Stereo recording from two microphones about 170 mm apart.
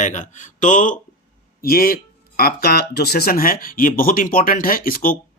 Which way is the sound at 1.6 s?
60° left (ahead or behind).